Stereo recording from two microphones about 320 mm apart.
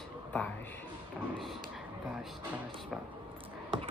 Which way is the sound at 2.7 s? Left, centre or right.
Centre.